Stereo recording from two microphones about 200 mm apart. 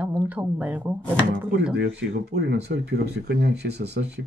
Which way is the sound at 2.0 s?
65° right (ahead or behind).